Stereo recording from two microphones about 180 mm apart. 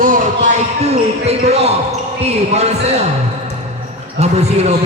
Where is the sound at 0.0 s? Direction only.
45° right (ahead or behind).